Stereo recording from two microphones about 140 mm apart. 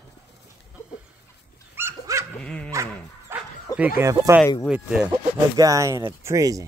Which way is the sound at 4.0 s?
20° right (ahead or behind).